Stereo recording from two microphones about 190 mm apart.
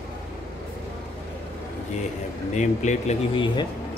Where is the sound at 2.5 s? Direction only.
40° left (ahead or behind).